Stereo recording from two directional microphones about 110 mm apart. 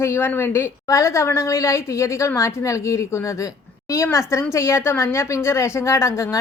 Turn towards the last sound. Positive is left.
turn(degrees=25)  # may be behind; listen again after turning